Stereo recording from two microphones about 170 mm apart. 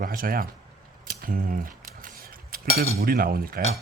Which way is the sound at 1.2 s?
55° right (ahead or behind).